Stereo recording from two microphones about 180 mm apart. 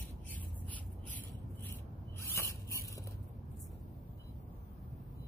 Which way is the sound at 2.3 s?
15° left (ahead or behind).